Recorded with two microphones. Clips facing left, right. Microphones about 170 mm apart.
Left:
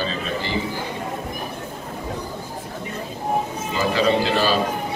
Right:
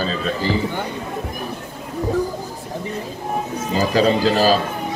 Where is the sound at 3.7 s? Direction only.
40° right (ahead or behind).